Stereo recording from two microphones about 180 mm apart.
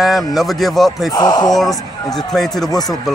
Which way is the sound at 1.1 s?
20° left (ahead or behind).